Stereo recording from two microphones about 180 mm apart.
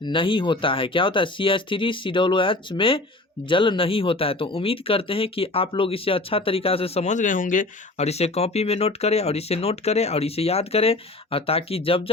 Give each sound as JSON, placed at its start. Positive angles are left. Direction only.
{"t": 0.0, "sound": "speech", "side_deg": 25}